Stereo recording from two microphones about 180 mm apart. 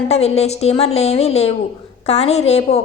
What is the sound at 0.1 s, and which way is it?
A woman's voice, 35° left (ahead or behind).